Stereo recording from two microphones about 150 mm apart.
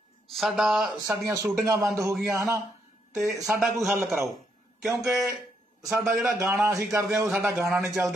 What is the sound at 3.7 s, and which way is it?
A man's voice, centre (ahead or behind).